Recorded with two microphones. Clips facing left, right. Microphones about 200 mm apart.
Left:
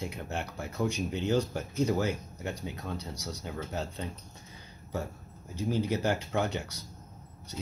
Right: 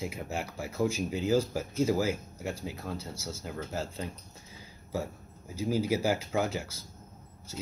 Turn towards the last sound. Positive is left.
turn(degrees=0)  # may be behind; listen again after turning